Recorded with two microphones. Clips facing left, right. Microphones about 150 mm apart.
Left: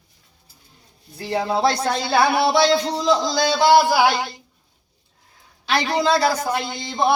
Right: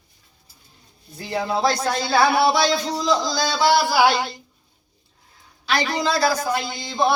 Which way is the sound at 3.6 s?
55° left (ahead or behind).